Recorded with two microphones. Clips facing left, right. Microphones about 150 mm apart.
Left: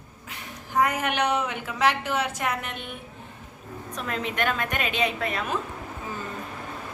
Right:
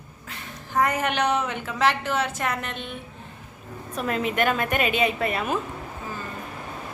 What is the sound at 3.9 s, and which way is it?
A woman's voice, 5° right (ahead or behind).